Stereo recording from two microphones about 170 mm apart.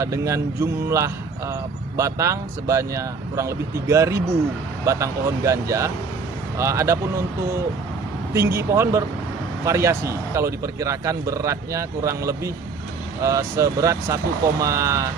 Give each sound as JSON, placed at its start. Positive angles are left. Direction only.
{"t": 0.0, "sound": "speech", "side_deg": -15}
{"t": 8.3, "sound": "speech", "side_deg": -15}